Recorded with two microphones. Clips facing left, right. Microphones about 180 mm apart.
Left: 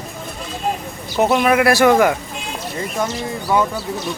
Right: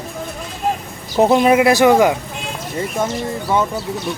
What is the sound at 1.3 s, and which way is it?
Speech, 25° right (ahead or behind).